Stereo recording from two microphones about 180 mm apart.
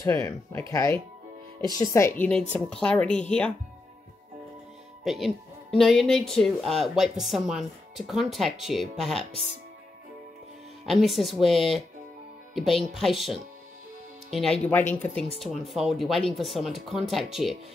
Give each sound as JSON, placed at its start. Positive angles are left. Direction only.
{"t": 0.0, "sound": "speech", "side_deg": 15}
{"t": 5.0, "sound": "speech", "side_deg": 0}
{"t": 10.9, "sound": "speech", "side_deg": 0}